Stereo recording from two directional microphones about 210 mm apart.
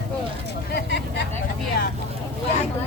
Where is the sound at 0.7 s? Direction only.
55° left (ahead or behind).